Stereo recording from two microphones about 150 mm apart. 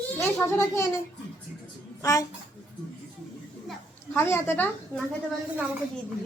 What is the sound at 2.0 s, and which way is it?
Speech, 20° left (ahead or behind).